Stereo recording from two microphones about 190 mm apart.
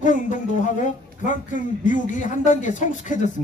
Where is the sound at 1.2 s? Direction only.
45° left (ahead or behind).